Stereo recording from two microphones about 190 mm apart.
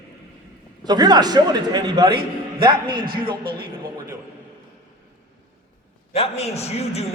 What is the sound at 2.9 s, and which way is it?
Speech, 50° right (ahead or behind).